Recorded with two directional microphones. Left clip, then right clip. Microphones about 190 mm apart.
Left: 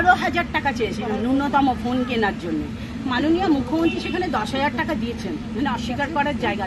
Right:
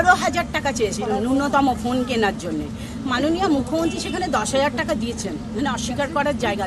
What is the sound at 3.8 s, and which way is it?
A woman's voice, 15° right (ahead or behind).